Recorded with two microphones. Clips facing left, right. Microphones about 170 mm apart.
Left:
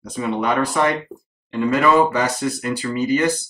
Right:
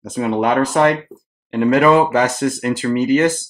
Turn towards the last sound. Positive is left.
turn(degrees=-45)  # may be behind; listen again after turning